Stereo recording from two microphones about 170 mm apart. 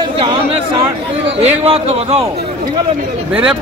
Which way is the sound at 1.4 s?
35° right (ahead or behind).